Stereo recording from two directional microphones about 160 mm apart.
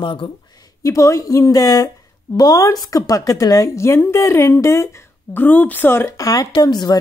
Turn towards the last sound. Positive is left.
turn(degrees=25)  # may be behind; listen again after turning